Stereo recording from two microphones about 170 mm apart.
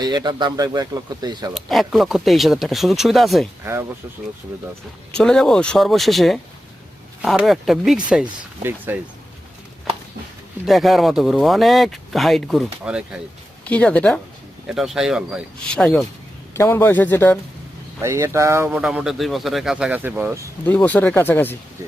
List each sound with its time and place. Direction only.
0.0 s speech: 25° right (ahead or behind)
1.5 s speech: centre (ahead or behind)
3.6 s speech: 15° right (ahead or behind)
5.1 s speech: 5° left (ahead or behind)
10.7 s speech: centre (ahead or behind)
13.7 s speech: 10° left (ahead or behind)
16.6 s speech: 15° left (ahead or behind)
18.0 s speech: 15° right (ahead or behind)
20.7 s speech: 10° left (ahead or behind)